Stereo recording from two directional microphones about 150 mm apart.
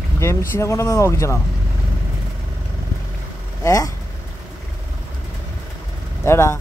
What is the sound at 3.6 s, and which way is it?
Speech, 20° left (ahead or behind).